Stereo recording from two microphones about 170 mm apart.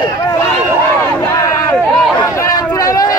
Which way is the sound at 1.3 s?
20° left (ahead or behind).